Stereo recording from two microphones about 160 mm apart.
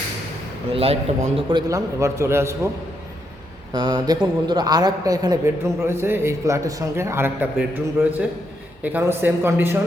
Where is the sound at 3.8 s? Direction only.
25° right (ahead or behind).